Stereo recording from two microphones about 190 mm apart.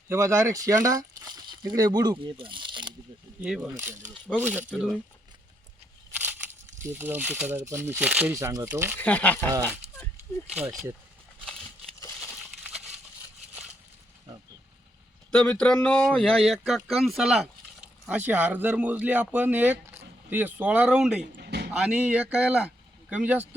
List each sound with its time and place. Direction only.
0.1 s speech: 15° right (ahead or behind)
3.4 s speech: 5° right (ahead or behind)
6.8 s speech: 10° right (ahead or behind)
9.0 s speech: 10° left (ahead or behind)
10.5 s speech: centre (ahead or behind)
15.3 s speech: 5° left (ahead or behind)
21.3 s a sound: 60° right (ahead or behind)
21.7 s speech: 5° right (ahead or behind)